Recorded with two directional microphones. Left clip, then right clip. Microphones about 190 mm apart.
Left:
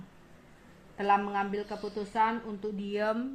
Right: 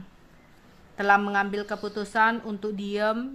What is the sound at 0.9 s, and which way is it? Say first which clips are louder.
A woman's voice: right 6 dB; 40° right (ahead or behind).